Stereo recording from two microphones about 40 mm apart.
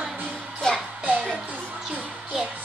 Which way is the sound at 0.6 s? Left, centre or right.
Centre.